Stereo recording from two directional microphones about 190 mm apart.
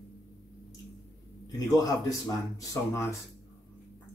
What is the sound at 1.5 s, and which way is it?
A man's voice, 20° left (ahead or behind).